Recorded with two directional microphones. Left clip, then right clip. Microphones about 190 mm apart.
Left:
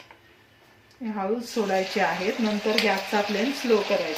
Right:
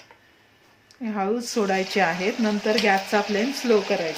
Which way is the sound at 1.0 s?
55° right (ahead or behind).